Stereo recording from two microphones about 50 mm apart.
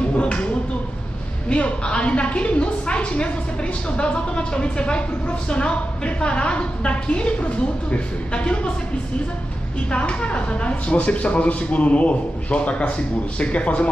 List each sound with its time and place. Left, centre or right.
0.1 s a sound: left
1.5 s a woman's voice: left
9.8 s a woman's voice: left